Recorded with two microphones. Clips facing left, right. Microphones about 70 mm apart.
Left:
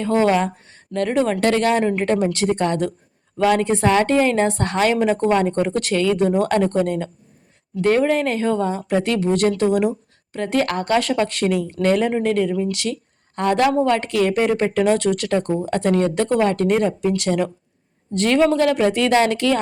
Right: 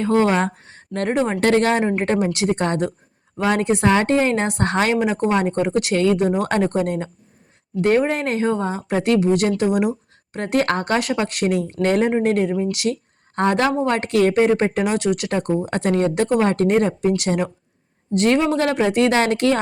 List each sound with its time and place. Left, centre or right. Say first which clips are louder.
0.0 s speech: even; right
4.2 s speech: left 2 dB; right
4.9 s speech: left 2 dB; centre
5.9 s speech: right 1 dB; right
6.1 s speech: left 2 dB; right
9.6 s speech: left 1 dB; centre
10.3 s speech: right 1 dB; right
12.9 s a sound: right 2 dB; right
13.8 s speech: right 1 dB; right